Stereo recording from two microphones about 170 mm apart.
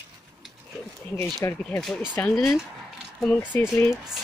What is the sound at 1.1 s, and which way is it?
Speech, 15° left (ahead or behind).